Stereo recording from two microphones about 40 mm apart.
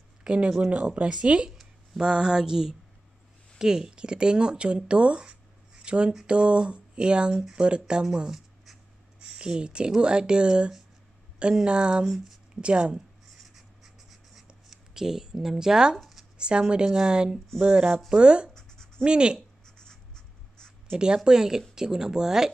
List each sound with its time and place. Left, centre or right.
0.2 s speech: right
1.1 s speech: right
13.4 s writing: centre
14.7 s speech: centre
16.0 s a sound: centre
16.3 s speech: right
18.5 s scratch: centre
19.0 s speech: right
19.6 s writing: centre
20.9 s speech: right